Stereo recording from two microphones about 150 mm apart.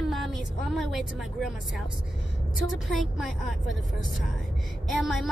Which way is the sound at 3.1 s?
Centre (ahead or behind).